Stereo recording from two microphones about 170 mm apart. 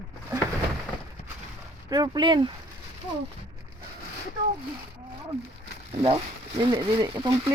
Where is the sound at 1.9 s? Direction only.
25° right (ahead or behind).